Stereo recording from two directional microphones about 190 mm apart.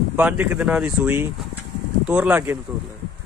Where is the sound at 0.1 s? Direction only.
10° right (ahead or behind).